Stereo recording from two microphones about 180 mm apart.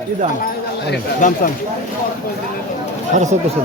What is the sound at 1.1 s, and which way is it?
Speech, 45° left (ahead or behind).